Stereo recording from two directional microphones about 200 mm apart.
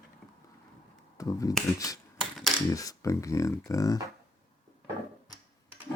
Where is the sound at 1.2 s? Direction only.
15° left (ahead or behind).